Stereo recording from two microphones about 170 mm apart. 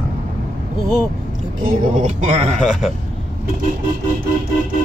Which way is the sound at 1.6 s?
45° right (ahead or behind).